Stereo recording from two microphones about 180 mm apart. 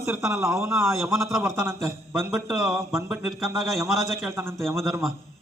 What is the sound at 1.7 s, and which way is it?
Speech, centre (ahead or behind).